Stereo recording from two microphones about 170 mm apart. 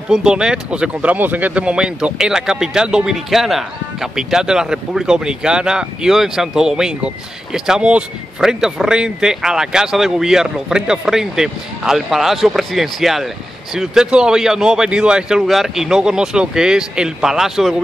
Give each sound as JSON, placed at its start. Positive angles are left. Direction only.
{"t": 0.1, "sound": "speech", "side_deg": -5}